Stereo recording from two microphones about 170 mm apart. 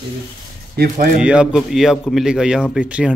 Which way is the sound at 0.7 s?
60° right (ahead or behind).